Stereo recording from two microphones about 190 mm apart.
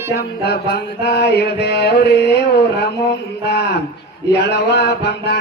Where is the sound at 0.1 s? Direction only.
60° left (ahead or behind).